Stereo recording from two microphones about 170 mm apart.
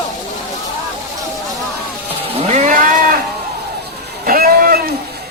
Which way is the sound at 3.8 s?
70° right (ahead or behind).